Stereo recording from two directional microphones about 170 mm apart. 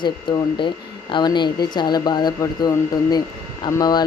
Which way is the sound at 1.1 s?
25° left (ahead or behind).